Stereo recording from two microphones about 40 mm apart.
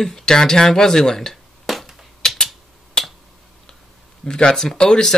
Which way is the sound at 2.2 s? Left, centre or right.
Centre.